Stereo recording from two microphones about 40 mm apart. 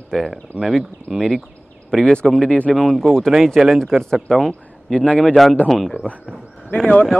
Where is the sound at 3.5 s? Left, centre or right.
Centre.